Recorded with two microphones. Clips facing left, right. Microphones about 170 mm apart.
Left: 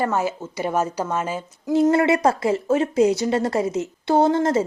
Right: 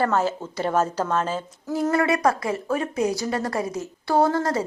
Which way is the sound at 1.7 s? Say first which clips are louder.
Left 5 dB; 25° left (ahead or behind).